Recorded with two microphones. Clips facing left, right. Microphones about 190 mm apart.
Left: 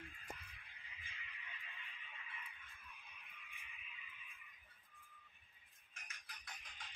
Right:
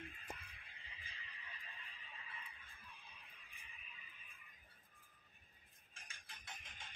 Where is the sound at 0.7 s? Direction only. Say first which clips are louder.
Even; 30° right (ahead or behind).